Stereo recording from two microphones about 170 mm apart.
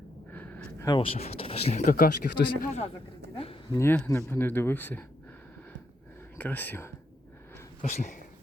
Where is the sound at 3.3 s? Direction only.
35° left (ahead or behind).